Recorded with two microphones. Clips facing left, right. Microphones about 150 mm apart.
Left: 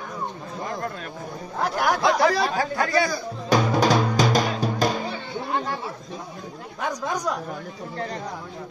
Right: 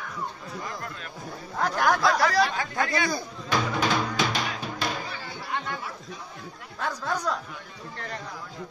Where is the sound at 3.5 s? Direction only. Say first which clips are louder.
Left 6 dB; 40° left (ahead or behind).